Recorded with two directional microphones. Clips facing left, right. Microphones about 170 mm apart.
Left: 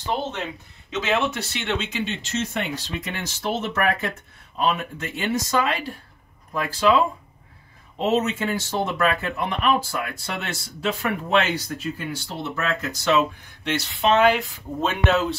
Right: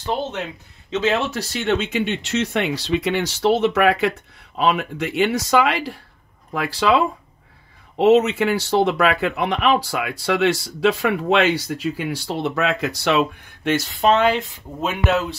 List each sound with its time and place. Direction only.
0.8 s speech: 30° right (ahead or behind); by 7.0 s 75° right (ahead or behind)
8.0 s speech: 70° right (ahead or behind)
13.7 s speech: 45° right (ahead or behind)
14.1 s speech: 30° right (ahead or behind)
14.8 s speech: 5° right (ahead or behind)